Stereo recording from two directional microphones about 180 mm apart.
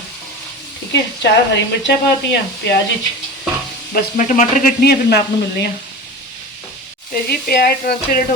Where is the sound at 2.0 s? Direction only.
70° left (ahead or behind).